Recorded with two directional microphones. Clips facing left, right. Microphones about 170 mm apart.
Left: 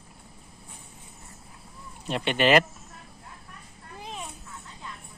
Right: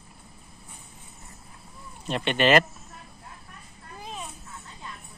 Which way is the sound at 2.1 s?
10° left (ahead or behind).